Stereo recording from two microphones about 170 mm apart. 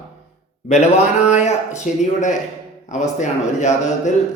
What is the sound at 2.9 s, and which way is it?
Speech, 45° left (ahead or behind).